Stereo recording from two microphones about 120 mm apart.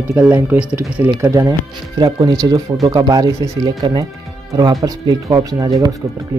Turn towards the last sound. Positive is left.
turn(degrees=-30)  # may be behind; listen again after turning